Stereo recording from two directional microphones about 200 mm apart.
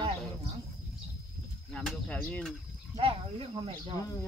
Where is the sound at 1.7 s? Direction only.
5° left (ahead or behind).